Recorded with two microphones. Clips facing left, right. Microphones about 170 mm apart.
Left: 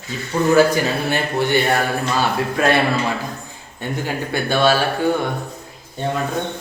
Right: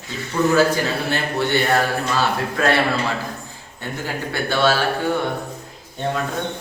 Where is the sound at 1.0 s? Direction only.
15° left (ahead or behind).